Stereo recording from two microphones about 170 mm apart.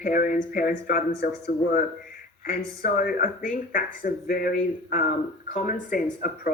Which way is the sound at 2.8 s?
55° left (ahead or behind).